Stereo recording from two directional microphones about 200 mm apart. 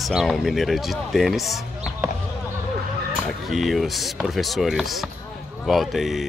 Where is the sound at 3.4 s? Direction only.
Centre (ahead or behind).